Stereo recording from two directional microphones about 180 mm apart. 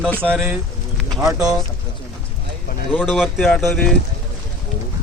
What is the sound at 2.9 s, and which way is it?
Speech, centre (ahead or behind).